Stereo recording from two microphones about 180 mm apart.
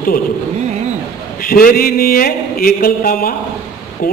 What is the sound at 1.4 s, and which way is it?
A man's voice, 50° left (ahead or behind).